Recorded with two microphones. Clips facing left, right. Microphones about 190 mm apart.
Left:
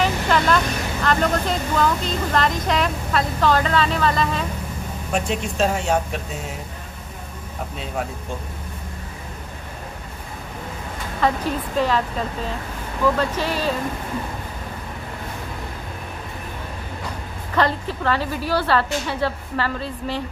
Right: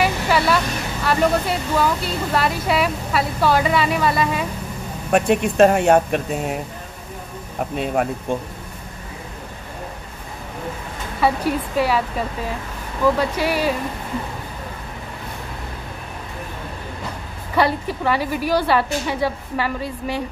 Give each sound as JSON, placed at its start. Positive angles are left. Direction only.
{"t": 0.0, "sound": "a sound", "side_deg": -10}
{"t": 1.0, "sound": "speech", "side_deg": -10}
{"t": 5.1, "sound": "speech", "side_deg": -60}
{"t": 7.7, "sound": "speech", "side_deg": -60}
{"t": 11.1, "sound": "speech", "side_deg": -10}
{"t": 17.6, "sound": "speech", "side_deg": -10}